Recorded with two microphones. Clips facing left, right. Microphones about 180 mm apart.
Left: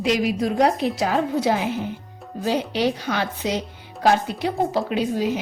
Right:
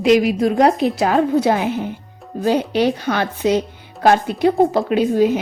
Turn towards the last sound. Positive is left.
turn(degrees=-55)  # may be behind; listen again after turning